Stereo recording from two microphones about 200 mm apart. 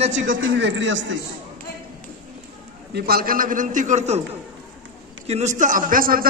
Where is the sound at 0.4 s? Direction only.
65° right (ahead or behind).